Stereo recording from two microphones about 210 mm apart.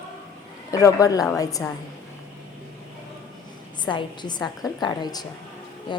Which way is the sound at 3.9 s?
20° left (ahead or behind).